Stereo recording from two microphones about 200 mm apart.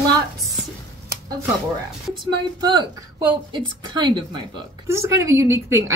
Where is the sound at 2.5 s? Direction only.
20° right (ahead or behind).